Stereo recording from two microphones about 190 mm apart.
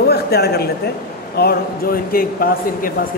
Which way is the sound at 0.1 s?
55° left (ahead or behind).